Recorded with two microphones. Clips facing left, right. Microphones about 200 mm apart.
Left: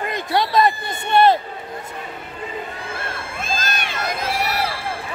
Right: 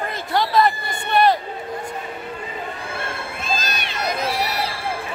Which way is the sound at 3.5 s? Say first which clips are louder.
Even; 50° left (ahead or behind).